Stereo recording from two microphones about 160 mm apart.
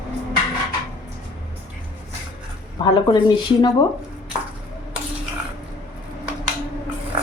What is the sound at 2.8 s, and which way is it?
Speech, 30° left (ahead or behind).